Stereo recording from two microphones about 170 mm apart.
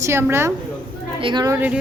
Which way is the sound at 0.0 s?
15° right (ahead or behind).